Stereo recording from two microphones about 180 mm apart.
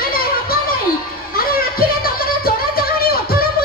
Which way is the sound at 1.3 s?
55° left (ahead or behind).